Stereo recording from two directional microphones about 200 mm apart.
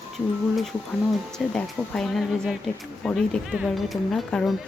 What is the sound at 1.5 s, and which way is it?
Speech, centre (ahead or behind).